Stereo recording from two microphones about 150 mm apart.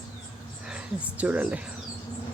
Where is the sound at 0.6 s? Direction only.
5° right (ahead or behind).